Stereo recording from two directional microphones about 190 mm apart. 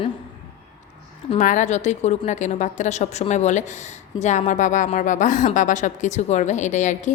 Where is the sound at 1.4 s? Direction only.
40° left (ahead or behind).